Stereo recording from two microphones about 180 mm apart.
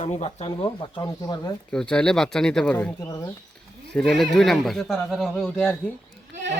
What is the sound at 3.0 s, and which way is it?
Speech, 20° left (ahead or behind).